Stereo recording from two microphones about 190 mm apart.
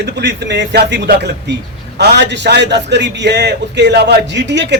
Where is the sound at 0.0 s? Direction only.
65° right (ahead or behind).